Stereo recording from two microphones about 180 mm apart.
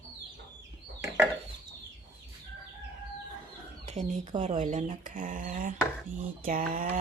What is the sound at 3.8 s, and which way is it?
Speech, 40° right (ahead or behind).